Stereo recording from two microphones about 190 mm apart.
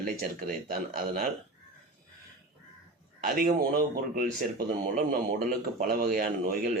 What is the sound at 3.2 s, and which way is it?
A man's voice, 50° right (ahead or behind).